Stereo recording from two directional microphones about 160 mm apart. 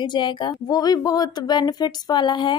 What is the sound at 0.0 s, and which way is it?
Speech, 30° left (ahead or behind).